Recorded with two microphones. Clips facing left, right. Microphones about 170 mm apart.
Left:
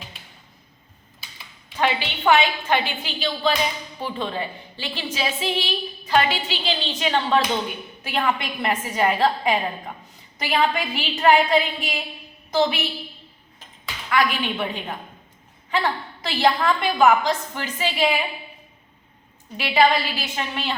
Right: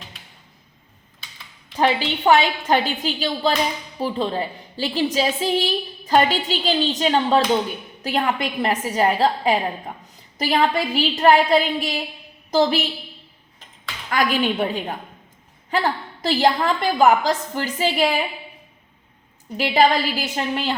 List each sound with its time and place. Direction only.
1.7 s a woman's voice: 35° right (ahead or behind)
14.1 s a woman's voice: 40° right (ahead or behind)
16.2 s a woman's voice: 40° right (ahead or behind)
19.5 s a woman's voice: 40° right (ahead or behind)